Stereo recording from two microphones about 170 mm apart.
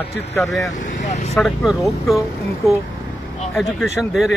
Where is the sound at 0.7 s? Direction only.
45° left (ahead or behind).